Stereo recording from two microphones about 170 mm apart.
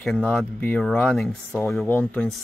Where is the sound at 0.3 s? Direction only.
10° left (ahead or behind).